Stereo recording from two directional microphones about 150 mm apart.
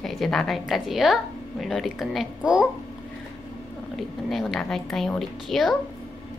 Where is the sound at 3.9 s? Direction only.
Centre (ahead or behind).